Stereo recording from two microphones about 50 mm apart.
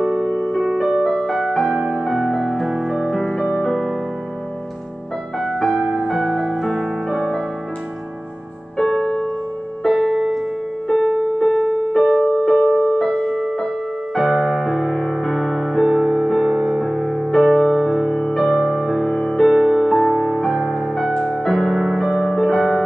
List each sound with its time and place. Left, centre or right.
0.2 s music: centre
0.6 s music: centre
5.4 s music: centre
9.0 s keyboard: centre
9.8 s music: centre
11.4 s piano: centre
12.6 s music: centre
14.1 s music: centre
19.0 s music: centre
19.4 s music: centre